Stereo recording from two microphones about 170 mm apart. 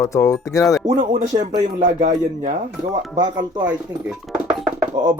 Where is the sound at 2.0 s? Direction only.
40° right (ahead or behind).